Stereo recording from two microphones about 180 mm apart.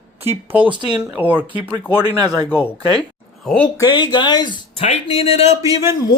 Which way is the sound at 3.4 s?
5° left (ahead or behind).